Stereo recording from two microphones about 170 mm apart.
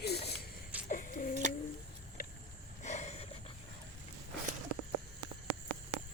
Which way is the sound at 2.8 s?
45° left (ahead or behind).